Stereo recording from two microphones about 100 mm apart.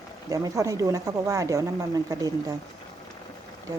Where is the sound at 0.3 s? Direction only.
35° right (ahead or behind).